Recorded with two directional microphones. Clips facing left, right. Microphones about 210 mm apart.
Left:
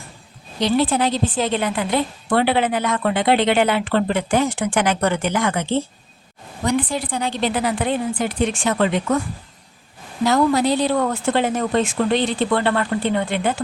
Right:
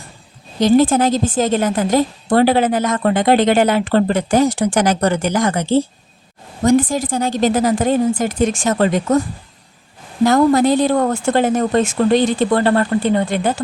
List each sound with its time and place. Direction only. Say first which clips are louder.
0.6 s a woman's voice: right 6 dB; 45° right (ahead or behind)
10.2 s speech: right 5 dB; 50° right (ahead or behind)